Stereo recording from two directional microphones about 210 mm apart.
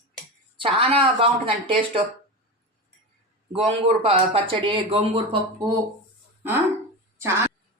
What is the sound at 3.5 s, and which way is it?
A man's voice, 30° right (ahead or behind).